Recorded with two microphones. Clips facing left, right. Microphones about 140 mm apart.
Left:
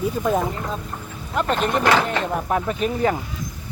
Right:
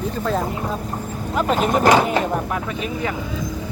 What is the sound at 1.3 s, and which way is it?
Speech, 5° right (ahead or behind).